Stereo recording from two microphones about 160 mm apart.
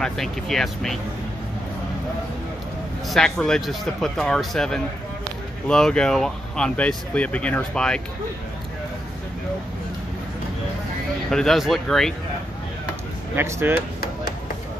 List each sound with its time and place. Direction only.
0.0 s speech: centre (ahead or behind)
3.1 s speech: 5° left (ahead or behind)
11.2 s speech: centre (ahead or behind)
13.4 s speech: 15° right (ahead or behind)
13.7 s chop: 75° left (ahead or behind)